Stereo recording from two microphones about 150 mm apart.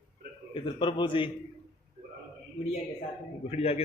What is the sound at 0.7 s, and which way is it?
Speech, 30° left (ahead or behind).